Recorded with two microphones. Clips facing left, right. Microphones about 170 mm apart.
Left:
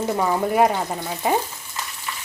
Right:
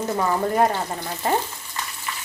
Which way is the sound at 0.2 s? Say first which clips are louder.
Left 1 dB; 10° left (ahead or behind).